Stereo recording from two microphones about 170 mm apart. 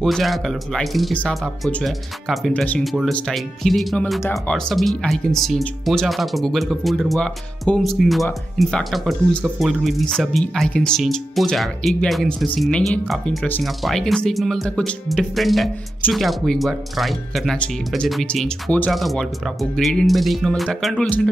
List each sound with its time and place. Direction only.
0.0 s speech: centre (ahead or behind)